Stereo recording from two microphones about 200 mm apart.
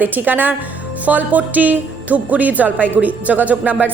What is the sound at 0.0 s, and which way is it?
A woman's voice, 10° right (ahead or behind).